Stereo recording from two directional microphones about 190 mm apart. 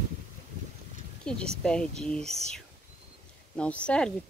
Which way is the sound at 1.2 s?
5° left (ahead or behind).